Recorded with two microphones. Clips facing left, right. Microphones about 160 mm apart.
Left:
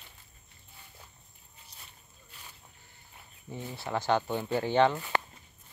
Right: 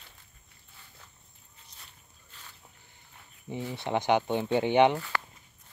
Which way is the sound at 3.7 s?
20° right (ahead or behind).